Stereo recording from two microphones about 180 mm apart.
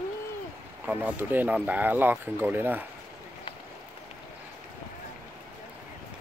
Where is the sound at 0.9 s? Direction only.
10° right (ahead or behind).